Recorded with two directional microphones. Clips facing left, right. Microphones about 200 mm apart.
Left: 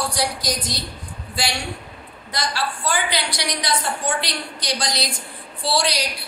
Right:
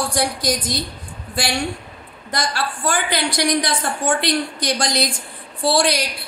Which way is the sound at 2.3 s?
50° right (ahead or behind).